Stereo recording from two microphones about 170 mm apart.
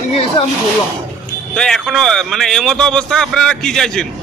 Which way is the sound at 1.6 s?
Centre (ahead or behind).